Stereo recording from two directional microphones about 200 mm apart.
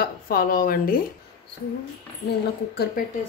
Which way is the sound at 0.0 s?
45° left (ahead or behind).